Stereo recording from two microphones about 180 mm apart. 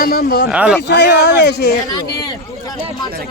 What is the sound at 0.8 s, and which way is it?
Speech, 70° left (ahead or behind).